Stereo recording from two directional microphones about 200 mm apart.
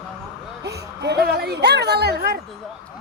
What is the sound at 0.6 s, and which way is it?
A woman's voice, 55° right (ahead or behind).